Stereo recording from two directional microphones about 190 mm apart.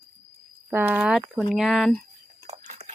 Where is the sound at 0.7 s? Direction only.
10° right (ahead or behind).